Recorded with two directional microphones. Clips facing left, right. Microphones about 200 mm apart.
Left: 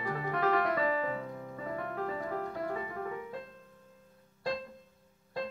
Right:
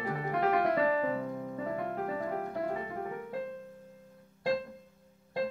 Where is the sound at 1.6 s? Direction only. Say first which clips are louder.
Even; 15° right (ahead or behind).